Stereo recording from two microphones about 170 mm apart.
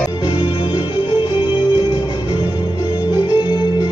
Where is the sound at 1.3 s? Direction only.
25° left (ahead or behind).